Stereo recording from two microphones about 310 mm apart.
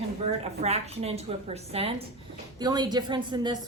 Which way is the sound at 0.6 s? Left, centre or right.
Centre.